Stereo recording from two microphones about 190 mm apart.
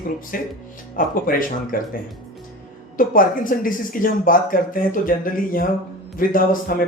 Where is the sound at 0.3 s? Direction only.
50° left (ahead or behind).